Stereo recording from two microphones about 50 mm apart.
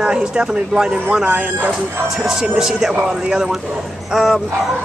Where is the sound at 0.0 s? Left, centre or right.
Centre.